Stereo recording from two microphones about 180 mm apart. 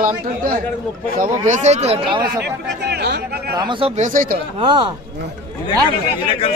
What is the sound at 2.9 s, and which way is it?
Chatter, 65° right (ahead or behind).